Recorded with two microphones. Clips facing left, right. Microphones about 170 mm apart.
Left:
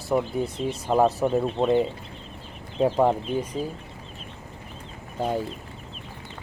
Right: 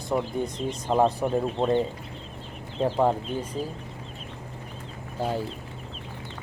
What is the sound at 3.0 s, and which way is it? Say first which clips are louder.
Speech: left 2 dB; 5° left (ahead or behind).